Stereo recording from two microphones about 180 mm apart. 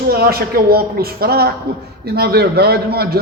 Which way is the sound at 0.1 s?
60° right (ahead or behind).